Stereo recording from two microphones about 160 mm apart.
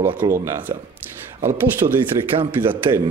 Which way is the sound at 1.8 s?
35° right (ahead or behind).